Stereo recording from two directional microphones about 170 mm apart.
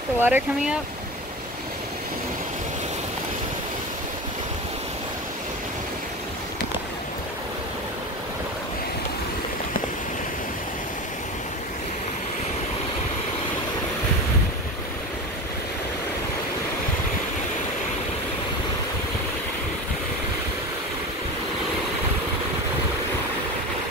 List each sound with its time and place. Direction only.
0.2 s speech: 10° right (ahead or behind)